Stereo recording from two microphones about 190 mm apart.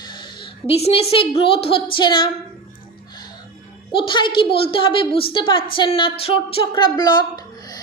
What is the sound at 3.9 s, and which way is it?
Speech, 25° left (ahead or behind).